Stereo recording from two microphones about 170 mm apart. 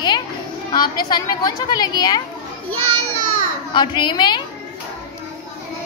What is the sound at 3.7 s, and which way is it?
Speech, 25° left (ahead or behind).